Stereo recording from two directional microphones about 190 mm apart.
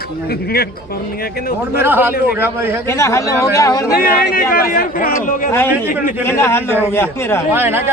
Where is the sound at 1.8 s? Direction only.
10° right (ahead or behind).